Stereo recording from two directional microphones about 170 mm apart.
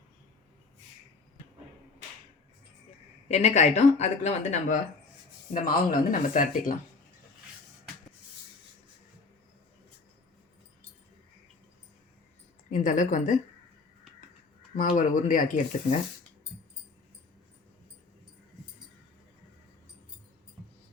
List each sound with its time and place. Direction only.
3.2 s speech: 40° left (ahead or behind)
5.6 s speech: 55° left (ahead or behind)
12.7 s speech: 45° left (ahead or behind)
14.8 s speech: 50° left (ahead or behind)